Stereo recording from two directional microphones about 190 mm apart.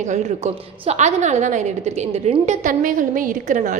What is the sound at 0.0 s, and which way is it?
A woman's voice, 35° right (ahead or behind).